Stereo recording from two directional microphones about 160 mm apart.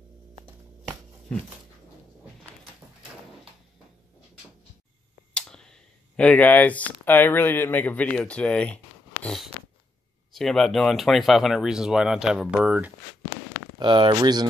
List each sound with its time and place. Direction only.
5.3 s speech: 5° left (ahead or behind)
9.2 s a sound: 5° left (ahead or behind)
10.3 s speech: centre (ahead or behind)
13.7 s speech: 30° right (ahead or behind)